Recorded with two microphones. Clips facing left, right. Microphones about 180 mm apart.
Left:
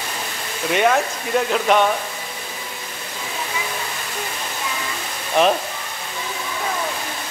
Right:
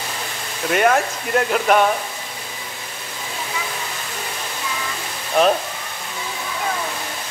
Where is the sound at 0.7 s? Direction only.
Centre (ahead or behind).